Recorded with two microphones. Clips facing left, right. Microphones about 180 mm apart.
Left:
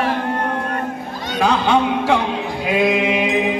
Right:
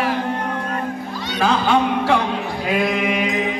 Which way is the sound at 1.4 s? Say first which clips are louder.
Left 1 dB; 20° left (ahead or behind).